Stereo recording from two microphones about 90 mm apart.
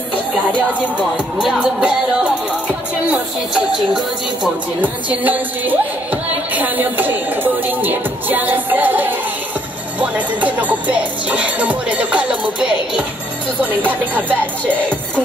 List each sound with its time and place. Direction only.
0.6 s music: 15° right (ahead or behind)
6.5 s speech: 20° right (ahead or behind)
9.9 s music: 15° right (ahead or behind)
13.6 s speech: 20° right (ahead or behind)